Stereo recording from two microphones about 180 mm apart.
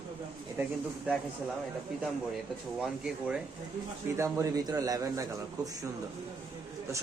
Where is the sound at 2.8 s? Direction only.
5° right (ahead or behind).